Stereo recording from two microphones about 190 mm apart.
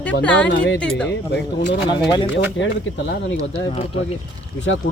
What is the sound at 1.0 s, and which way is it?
Speech, 65° left (ahead or behind).